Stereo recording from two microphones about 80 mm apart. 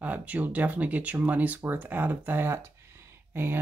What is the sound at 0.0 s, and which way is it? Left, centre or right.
Speech, centre.